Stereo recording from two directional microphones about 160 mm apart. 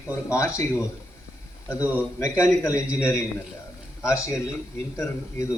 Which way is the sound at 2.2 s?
20° left (ahead or behind).